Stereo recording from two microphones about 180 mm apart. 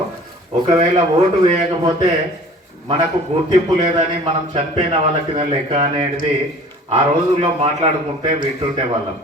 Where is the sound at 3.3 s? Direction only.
40° right (ahead or behind).